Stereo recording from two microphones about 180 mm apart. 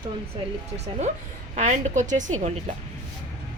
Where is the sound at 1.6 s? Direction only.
40° right (ahead or behind).